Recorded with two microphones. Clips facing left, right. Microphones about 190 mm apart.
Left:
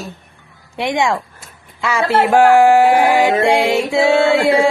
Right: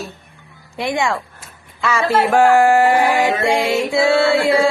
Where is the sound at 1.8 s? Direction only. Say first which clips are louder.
Left 1 dB; 15° left (ahead or behind).